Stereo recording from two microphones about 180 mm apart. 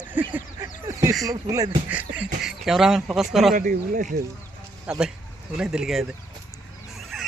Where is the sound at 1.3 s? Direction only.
20° right (ahead or behind).